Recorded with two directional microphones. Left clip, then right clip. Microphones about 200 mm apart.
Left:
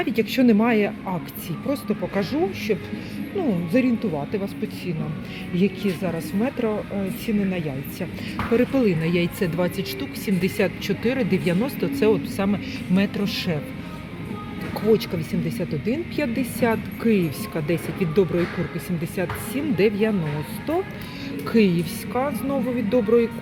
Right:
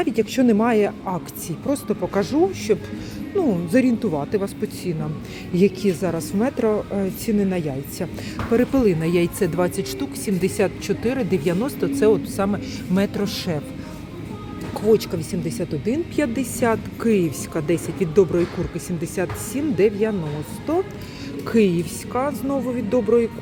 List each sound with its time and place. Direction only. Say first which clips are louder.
0.0 s speech: right 1 dB; 10° right (ahead or behind)
5.5 s speech: right 5 dB; 30° right (ahead or behind); by 13.6 s 15° right (ahead or behind)
14.8 s speech: right 2 dB; 15° right (ahead or behind)
21.4 s speech: right 2 dB; 10° right (ahead or behind)